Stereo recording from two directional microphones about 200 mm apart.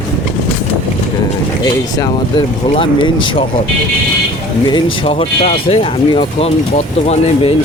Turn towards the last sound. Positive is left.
turn(degrees=30)  # may be behind; listen again after turning